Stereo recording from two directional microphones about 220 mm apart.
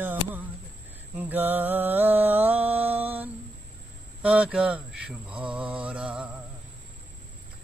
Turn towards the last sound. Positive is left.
turn(degrees=-5)  # may be behind; listen again after turning